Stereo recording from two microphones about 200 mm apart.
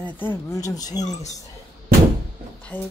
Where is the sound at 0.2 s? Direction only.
15° left (ahead or behind).